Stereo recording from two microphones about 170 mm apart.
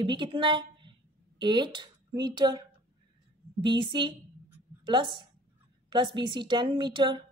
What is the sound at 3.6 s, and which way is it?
Speech, 30° right (ahead or behind).